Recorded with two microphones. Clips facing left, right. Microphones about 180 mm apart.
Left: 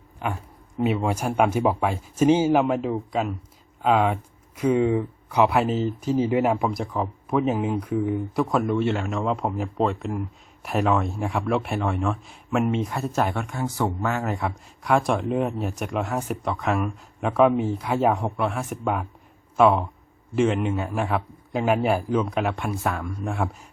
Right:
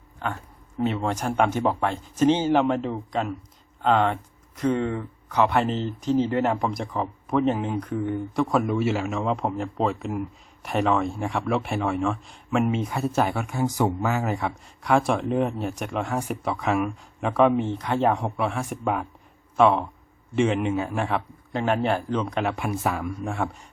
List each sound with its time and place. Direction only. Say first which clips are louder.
0.2 s speech: left 1 dB; 10° left (ahead or behind); by 13.7 s 5° right (ahead or behind)
13.7 s speech: right 2 dB; 15° right (ahead or behind)
14.0 s speech: right 1 dB; 5° right (ahead or behind)